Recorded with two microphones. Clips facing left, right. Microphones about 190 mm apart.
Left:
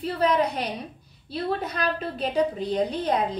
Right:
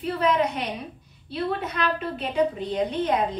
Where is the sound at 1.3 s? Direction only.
35° left (ahead or behind).